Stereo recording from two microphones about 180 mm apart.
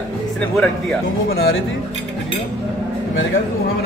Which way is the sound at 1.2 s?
55° left (ahead or behind).